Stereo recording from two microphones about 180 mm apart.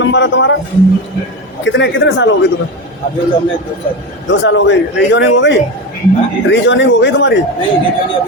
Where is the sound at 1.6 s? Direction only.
90° left.